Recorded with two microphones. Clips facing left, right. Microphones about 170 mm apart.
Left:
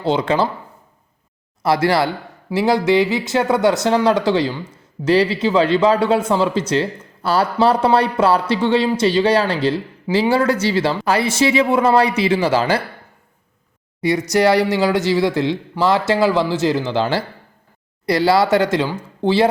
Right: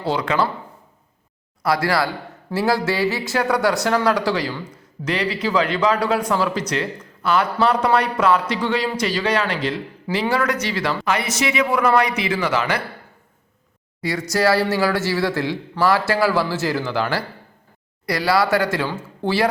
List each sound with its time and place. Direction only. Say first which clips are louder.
0.0 s speech: left 4 dB; 25° left (ahead or behind)
1.6 s speech: left 4 dB; 25° left (ahead or behind)
14.0 s speech: left 4 dB; 20° left (ahead or behind)